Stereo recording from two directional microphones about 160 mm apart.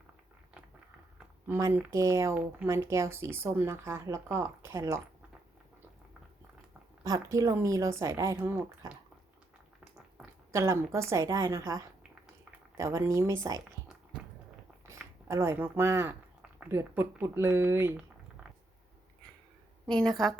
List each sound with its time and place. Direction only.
1.5 s speech: 15° right (ahead or behind)
7.0 s speech: 20° right (ahead or behind)
10.5 s speech: 20° right (ahead or behind)
14.8 s speech: 15° right (ahead or behind)
19.9 s a woman's voice: 5° left (ahead or behind)